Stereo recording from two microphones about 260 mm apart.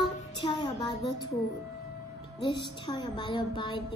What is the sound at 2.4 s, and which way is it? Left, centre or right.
Speech, centre.